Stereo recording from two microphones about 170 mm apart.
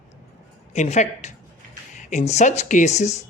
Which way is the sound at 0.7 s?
45° left (ahead or behind).